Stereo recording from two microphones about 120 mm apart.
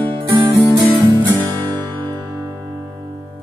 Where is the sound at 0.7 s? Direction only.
35° right (ahead or behind).